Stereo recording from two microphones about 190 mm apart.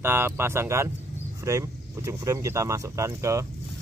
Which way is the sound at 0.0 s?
10° right (ahead or behind).